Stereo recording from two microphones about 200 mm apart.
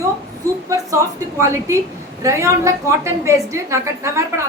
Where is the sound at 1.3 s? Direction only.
15° right (ahead or behind).